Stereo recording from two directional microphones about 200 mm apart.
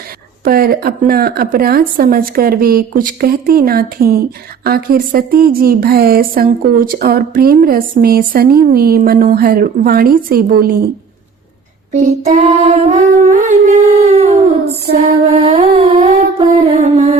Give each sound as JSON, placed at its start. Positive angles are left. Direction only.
{"t": 0.4, "sound": "speech", "side_deg": -50}
{"t": 11.9, "sound": "child singing", "side_deg": -35}
{"t": 15.3, "sound": "humming", "side_deg": -30}
{"t": 16.6, "sound": "child singing", "side_deg": -35}